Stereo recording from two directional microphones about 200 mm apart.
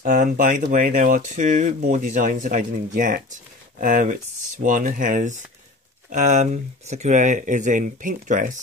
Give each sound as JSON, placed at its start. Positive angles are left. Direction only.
{"t": 0.0, "sound": "speech", "side_deg": -45}